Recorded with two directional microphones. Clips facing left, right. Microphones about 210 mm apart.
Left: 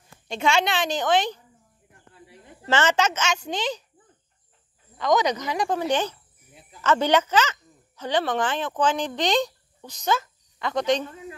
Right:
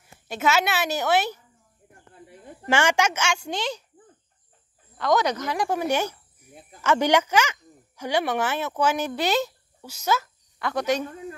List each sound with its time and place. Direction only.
0.3 s speech: 5° right (ahead or behind)
2.6 s speech: 10° right (ahead or behind)
3.5 s speech: 15° left (ahead or behind)
4.9 s speech: 15° left (ahead or behind)
5.6 s speech: 10° right (ahead or behind)